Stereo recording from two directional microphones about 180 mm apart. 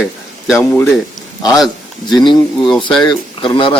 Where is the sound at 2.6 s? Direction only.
Centre (ahead or behind).